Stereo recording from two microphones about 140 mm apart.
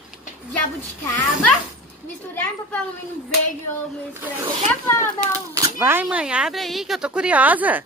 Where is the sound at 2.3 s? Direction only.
15° left (ahead or behind).